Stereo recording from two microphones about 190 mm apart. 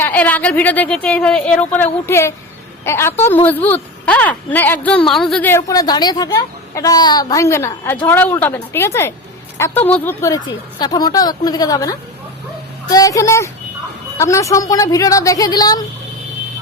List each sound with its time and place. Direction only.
0.0 s a woman's voice: 10° left (ahead or behind)